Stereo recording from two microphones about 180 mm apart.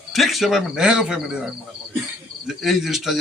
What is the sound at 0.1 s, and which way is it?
A man's voice, centre (ahead or behind).